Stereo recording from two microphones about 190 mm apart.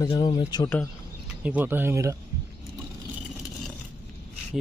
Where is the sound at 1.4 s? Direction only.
10° right (ahead or behind).